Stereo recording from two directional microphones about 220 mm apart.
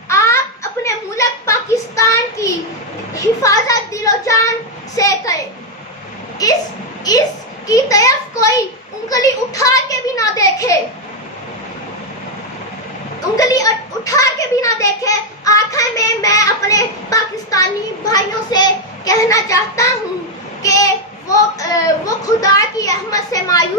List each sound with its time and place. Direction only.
0.1 s a sound: 10° left (ahead or behind)
3.2 s a child's voice: 15° left (ahead or behind)
6.4 s a child's voice: 15° left (ahead or behind)
13.4 s a child's voice: 15° left (ahead or behind)
20.6 s a sound: 15° left (ahead or behind)
21.5 s a child's voice: 15° left (ahead or behind)